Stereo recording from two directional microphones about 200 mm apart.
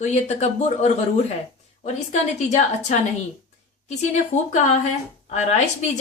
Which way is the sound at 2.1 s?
35° left (ahead or behind).